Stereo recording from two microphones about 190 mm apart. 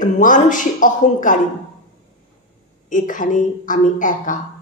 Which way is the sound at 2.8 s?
45° left (ahead or behind).